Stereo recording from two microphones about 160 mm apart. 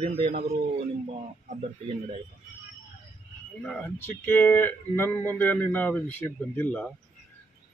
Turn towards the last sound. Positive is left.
turn(degrees=10)  # may be behind; listen again after turning